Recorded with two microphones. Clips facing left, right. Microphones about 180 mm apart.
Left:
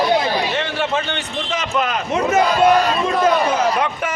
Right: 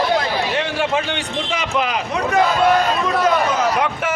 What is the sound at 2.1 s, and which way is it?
A man's voice, 20° left (ahead or behind).